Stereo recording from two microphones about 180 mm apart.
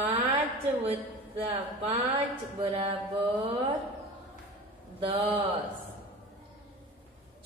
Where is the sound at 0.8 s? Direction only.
35° right (ahead or behind).